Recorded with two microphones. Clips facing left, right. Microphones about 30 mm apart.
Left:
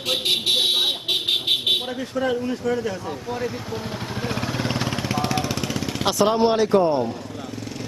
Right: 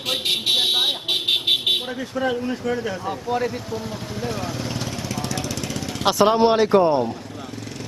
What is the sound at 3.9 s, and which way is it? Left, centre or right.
Vehicle, left.